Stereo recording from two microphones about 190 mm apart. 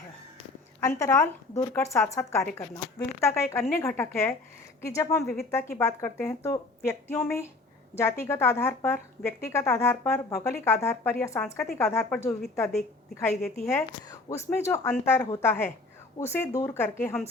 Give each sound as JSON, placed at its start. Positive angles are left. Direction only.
{"t": 0.8, "sound": "a woman's voice", "side_deg": 15}
{"t": 5.2, "sound": "a woman's voice", "side_deg": 0}
{"t": 5.5, "sound": "a woman's voice", "side_deg": 15}
{"t": 13.3, "sound": "a woman's voice", "side_deg": 0}
{"t": 14.3, "sound": "a woman's voice", "side_deg": 15}